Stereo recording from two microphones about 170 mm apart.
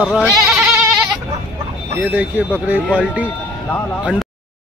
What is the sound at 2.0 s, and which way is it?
Speech, 10° right (ahead or behind).